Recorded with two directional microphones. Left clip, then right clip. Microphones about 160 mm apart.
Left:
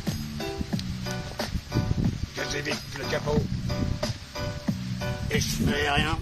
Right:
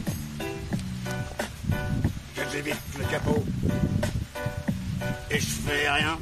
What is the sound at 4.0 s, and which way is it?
Music, 10° right (ahead or behind).